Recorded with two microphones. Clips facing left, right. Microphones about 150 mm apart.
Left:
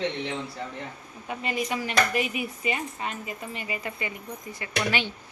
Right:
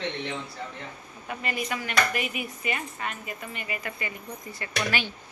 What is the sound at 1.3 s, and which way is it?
Speech, 25° left (ahead or behind).